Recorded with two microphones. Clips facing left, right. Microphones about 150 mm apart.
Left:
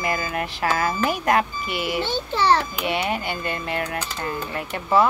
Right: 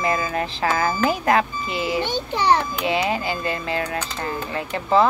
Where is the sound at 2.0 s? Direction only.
15° right (ahead or behind).